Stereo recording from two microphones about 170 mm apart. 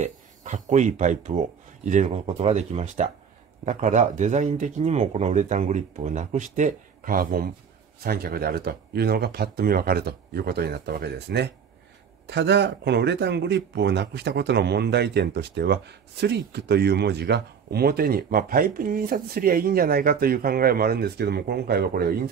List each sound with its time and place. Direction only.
0.0 s speech: 45° right (ahead or behind); by 22.3 s 65° right (ahead or behind)